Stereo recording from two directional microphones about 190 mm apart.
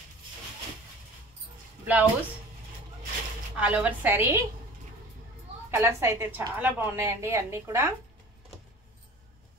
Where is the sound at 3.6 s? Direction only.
5° right (ahead or behind).